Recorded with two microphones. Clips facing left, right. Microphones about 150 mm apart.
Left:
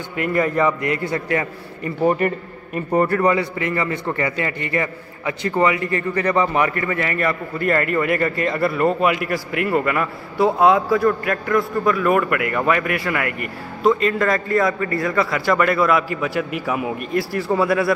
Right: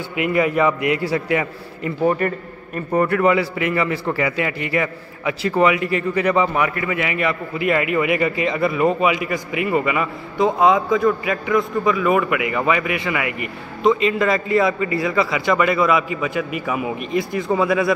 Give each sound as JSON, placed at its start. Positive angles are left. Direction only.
{"t": 0.1, "sound": "a man's voice", "side_deg": -10}
{"t": 2.0, "sound": "a man's voice", "side_deg": 10}
{"t": 3.1, "sound": "a man's voice", "side_deg": -5}
{"t": 3.3, "sound": "a man's voice", "side_deg": -90}
{"t": 3.7, "sound": "a man's voice", "side_deg": -5}
{"t": 4.5, "sound": "a man's voice", "side_deg": -90}
{"t": 5.8, "sound": "a man's voice", "side_deg": -90}
{"t": 6.2, "sound": "a man's voice", "side_deg": -5}